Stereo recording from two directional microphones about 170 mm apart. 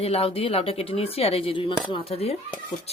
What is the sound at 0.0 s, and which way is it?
Speech, 35° left (ahead or behind).